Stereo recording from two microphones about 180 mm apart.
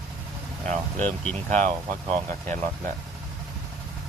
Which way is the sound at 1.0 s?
10° left (ahead or behind).